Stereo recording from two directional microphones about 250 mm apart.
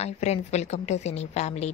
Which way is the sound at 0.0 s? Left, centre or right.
Left.